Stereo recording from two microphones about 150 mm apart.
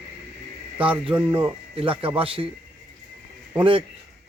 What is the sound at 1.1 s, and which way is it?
Speech, 10° right (ahead or behind).